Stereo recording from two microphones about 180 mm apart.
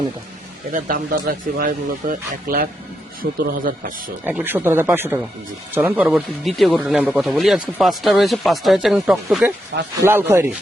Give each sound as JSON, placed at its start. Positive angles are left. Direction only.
{"t": 0.7, "sound": "speech", "side_deg": -50}
{"t": 3.2, "sound": "speech", "side_deg": -75}
{"t": 4.2, "sound": "speech", "side_deg": -10}